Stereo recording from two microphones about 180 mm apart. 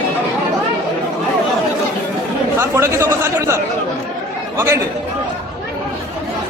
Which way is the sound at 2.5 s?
15° right (ahead or behind).